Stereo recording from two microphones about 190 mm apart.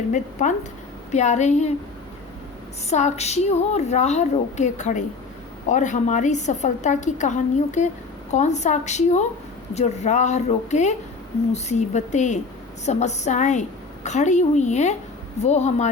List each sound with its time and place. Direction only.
0.1 s a woman's voice: 40° left (ahead or behind)
2.9 s a woman's voice: 35° left (ahead or behind)